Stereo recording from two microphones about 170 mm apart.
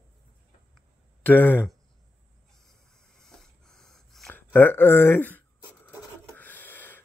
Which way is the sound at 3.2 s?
5° left (ahead or behind).